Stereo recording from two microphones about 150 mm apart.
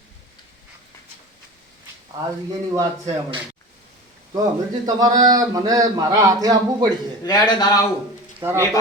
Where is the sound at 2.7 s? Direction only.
25° right (ahead or behind).